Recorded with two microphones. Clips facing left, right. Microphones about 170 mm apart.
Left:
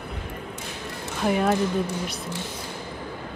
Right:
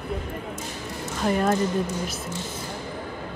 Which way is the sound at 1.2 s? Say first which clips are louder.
Even; 5° left (ahead or behind).